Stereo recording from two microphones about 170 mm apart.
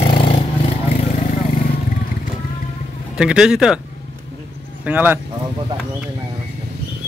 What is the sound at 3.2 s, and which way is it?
Speech, 5° right (ahead or behind).